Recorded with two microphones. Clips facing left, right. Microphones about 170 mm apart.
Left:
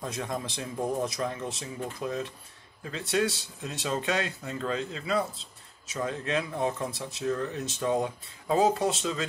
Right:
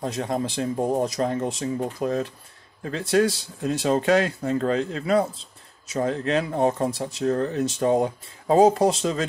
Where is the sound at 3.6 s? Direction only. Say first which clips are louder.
Right 10 dB; 50° right (ahead or behind).